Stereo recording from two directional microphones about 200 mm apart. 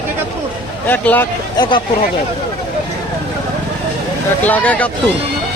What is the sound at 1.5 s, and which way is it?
Speech, 20° left (ahead or behind).